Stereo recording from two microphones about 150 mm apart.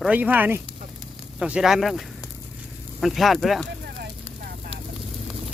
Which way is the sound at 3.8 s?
90° right.